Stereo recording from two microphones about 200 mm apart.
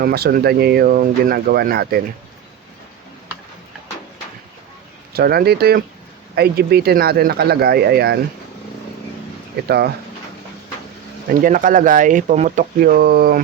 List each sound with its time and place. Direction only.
0.0 s speech: 50° right (ahead or behind)
5.1 s speech: 50° right (ahead or behind)
9.6 s speech: 55° right (ahead or behind)
11.3 s speech: 40° right (ahead or behind)